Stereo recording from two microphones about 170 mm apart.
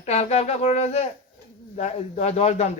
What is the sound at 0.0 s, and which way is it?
Speech, 40° left (ahead or behind).